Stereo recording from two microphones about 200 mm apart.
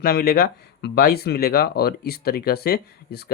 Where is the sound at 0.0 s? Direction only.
50° left (ahead or behind).